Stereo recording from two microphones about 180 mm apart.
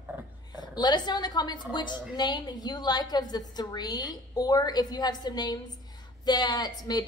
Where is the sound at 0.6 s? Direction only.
25° left (ahead or behind).